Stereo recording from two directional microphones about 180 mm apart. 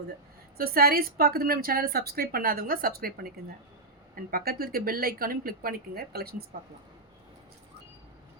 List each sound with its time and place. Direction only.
0.5 s a woman's voice: 55° right (ahead or behind)